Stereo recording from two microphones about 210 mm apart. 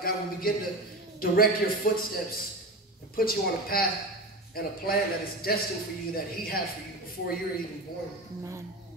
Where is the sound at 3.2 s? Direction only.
45° left (ahead or behind).